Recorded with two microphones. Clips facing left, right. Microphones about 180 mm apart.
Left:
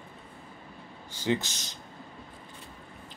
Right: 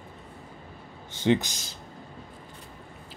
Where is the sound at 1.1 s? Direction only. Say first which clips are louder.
Right 5 dB; 20° right (ahead or behind).